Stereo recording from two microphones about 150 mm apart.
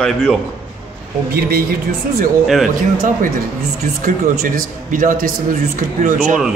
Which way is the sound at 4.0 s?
70° right (ahead or behind).